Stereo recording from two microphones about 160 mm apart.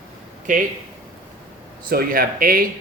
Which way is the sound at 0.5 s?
55° right (ahead or behind).